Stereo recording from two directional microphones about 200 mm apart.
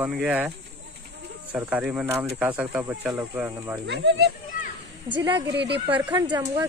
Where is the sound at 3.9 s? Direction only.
60° right (ahead or behind).